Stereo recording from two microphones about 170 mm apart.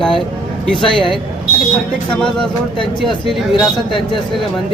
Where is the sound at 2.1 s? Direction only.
5° left (ahead or behind).